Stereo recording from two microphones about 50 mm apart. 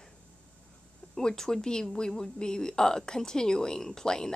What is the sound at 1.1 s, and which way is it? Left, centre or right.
A woman's voice, centre.